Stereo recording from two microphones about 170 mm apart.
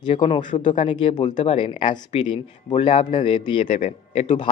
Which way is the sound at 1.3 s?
45° left (ahead or behind).